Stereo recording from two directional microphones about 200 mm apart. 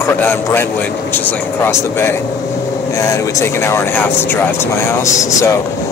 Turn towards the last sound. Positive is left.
turn(degrees=15)  # may be behind; listen again after turning